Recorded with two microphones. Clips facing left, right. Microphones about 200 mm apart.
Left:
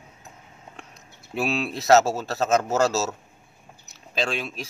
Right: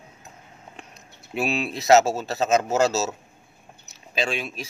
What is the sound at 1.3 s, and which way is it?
A man's voice, 20° right (ahead or behind).